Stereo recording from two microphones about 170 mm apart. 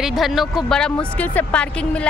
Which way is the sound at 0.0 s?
Centre (ahead or behind).